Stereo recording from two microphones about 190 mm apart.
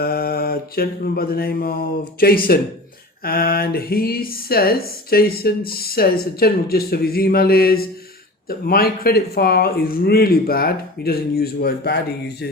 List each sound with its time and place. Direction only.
0.0 s mantra: 50° left (ahead or behind)
2.1 s speech: 55° left (ahead or behind)